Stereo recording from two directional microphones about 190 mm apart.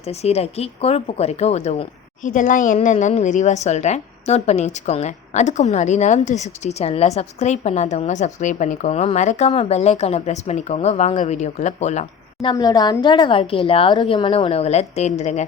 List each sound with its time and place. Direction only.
0.0 s speech: 35° left (ahead or behind)
12.5 s a woman's voice: 20° left (ahead or behind); by 15.4 s 35° left (ahead or behind)